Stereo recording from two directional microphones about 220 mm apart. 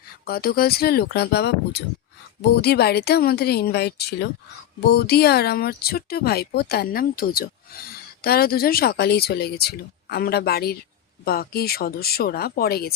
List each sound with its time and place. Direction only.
0.3 s speech: 45° left (ahead or behind)